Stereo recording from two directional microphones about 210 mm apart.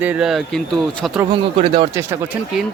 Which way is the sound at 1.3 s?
25° right (ahead or behind).